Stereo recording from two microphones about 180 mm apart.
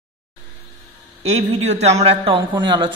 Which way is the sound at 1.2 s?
35° right (ahead or behind).